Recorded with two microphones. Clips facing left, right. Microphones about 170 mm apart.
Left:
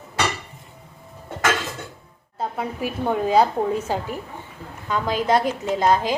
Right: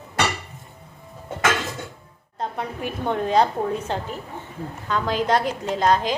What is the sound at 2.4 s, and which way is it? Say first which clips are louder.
A woman's voice: left 2 dB; 5° left (ahead or behind).